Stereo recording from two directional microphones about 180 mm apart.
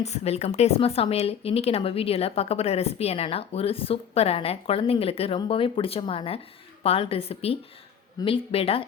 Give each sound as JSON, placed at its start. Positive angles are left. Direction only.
{"t": 0.0, "sound": "a woman's voice", "side_deg": 40}